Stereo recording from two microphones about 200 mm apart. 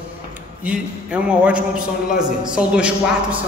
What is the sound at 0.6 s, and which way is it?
A man's voice, 5° right (ahead or behind).